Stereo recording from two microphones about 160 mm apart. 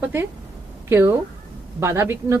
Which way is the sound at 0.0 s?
15° right (ahead or behind).